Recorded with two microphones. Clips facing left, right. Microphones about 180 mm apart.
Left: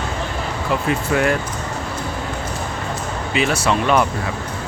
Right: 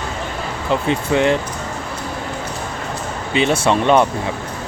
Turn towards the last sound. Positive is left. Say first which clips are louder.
# right 3 dB
turn(degrees=-25)  # may be behind; listen again after turning